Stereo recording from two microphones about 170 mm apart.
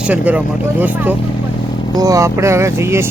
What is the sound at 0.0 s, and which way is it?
Speech, 10° right (ahead or behind).